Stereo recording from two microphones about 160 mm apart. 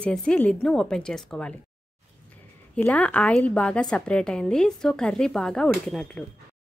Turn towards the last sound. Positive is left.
turn(degrees=5)  # may be behind; listen again after turning